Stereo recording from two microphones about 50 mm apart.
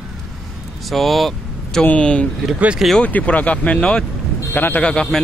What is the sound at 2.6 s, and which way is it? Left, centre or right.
Speech, right.